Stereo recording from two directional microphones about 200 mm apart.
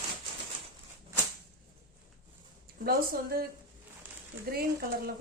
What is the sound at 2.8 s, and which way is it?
Speech, 50° right (ahead or behind).